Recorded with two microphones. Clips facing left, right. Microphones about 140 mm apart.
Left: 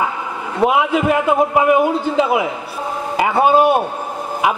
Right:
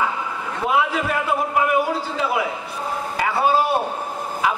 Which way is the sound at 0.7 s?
20° left (ahead or behind).